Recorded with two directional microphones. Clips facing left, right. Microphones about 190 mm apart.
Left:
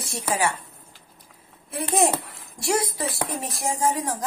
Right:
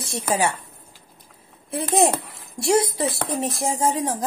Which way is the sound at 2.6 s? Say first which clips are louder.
Right 5 dB; 25° right (ahead or behind).